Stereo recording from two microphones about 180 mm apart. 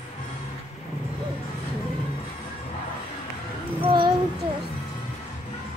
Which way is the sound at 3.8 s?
25° right (ahead or behind).